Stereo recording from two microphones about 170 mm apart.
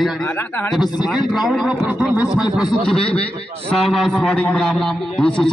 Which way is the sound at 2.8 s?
5° left (ahead or behind).